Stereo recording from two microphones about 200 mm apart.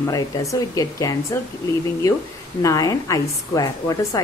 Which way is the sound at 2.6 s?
15° left (ahead or behind).